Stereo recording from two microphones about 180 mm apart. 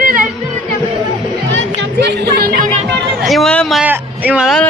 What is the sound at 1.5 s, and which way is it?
Music, 90° right.